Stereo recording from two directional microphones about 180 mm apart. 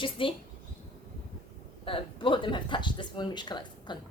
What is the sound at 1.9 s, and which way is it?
Speech, 30° left (ahead or behind).